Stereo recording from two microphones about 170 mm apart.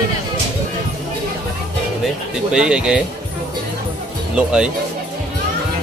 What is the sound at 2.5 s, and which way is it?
Speech, 5° right (ahead or behind).